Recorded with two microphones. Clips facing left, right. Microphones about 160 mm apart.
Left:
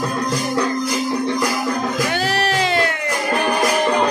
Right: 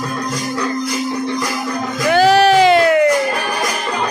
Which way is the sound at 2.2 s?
90° right.